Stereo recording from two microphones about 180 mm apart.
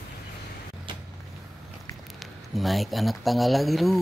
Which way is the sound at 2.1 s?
Centre (ahead or behind).